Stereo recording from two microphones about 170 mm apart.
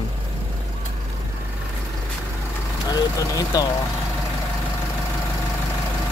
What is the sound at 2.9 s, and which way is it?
Speech, 20° left (ahead or behind).